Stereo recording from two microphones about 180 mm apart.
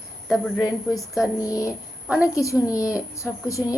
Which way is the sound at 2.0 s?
5° right (ahead or behind).